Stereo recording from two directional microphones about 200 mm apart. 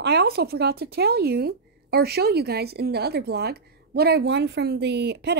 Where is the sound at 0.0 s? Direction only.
55° right (ahead or behind).